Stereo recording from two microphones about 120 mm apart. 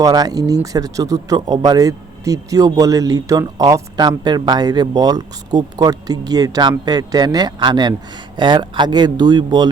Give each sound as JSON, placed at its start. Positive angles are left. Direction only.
{"t": 0.0, "sound": "speech", "side_deg": -30}